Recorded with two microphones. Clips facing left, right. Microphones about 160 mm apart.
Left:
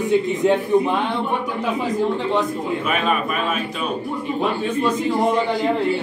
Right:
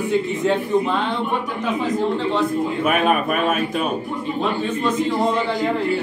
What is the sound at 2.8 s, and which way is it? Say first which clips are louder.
Speech: right 4 dB; 55° right (ahead or behind).